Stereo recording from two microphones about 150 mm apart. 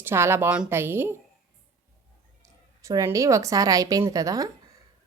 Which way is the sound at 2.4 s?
20° right (ahead or behind).